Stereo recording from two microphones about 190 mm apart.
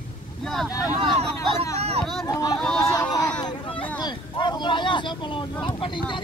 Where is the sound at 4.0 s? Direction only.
20° left (ahead or behind).